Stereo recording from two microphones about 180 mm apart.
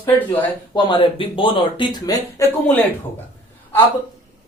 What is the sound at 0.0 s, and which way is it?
Speech, 10° left (ahead or behind).